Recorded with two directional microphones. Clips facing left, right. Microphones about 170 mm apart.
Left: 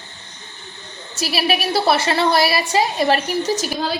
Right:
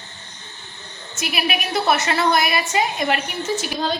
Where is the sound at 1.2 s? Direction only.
35° left (ahead or behind).